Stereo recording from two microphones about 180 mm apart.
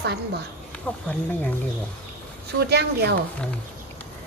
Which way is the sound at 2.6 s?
65° right (ahead or behind).